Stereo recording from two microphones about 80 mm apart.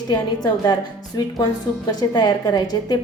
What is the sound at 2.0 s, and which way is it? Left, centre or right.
Speech, left.